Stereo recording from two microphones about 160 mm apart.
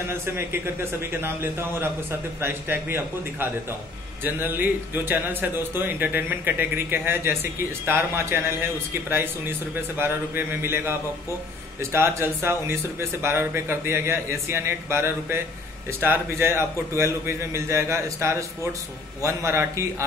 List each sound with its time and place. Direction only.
1.2 s speech: 15° right (ahead or behind)
9.8 s speech: 15° right (ahead or behind)